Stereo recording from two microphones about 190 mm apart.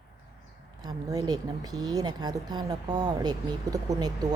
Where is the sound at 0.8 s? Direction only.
20° right (ahead or behind).